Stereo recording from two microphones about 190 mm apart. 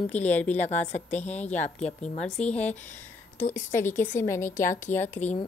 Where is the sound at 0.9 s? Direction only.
35° left (ahead or behind).